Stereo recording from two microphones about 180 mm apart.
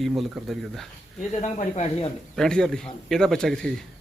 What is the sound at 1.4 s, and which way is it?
Speech, 40° left (ahead or behind).